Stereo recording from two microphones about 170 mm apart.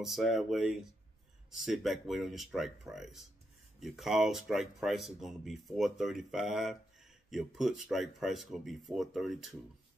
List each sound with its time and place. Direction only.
0.0 s speech: centre (ahead or behind)